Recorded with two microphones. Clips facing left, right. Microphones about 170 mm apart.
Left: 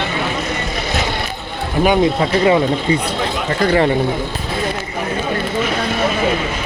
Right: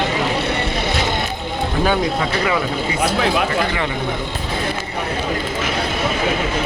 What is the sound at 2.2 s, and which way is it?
Speech, 30° left (ahead or behind).